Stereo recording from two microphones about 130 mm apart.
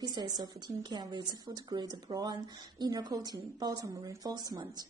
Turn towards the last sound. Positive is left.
turn(degrees=-30)  # may be behind; listen again after turning